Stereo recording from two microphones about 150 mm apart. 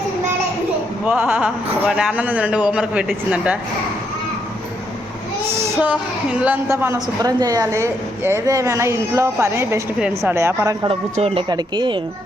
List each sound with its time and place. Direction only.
1.0 s a man's voice: 10° right (ahead or behind)
5.5 s child singing: 20° right (ahead or behind)
6.4 s a man's voice: 15° right (ahead or behind)
10.8 s speech: 40° right (ahead or behind)
11.4 s a man's voice: 30° right (ahead or behind)